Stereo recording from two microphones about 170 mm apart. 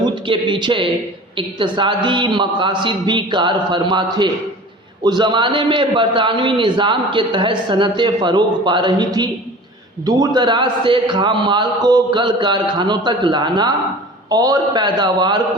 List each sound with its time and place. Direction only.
0.0 s a man's voice: 30° right (ahead or behind)